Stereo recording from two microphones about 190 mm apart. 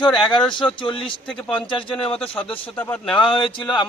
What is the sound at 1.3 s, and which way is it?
Speech, 5° left (ahead or behind).